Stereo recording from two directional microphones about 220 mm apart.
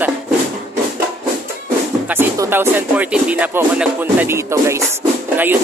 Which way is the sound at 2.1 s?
10° right (ahead or behind).